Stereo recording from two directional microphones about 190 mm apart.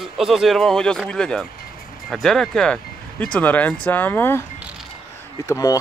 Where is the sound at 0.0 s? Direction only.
Centre (ahead or behind).